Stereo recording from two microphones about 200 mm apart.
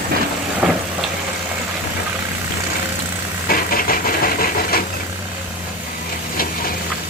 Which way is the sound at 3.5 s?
45° left (ahead or behind).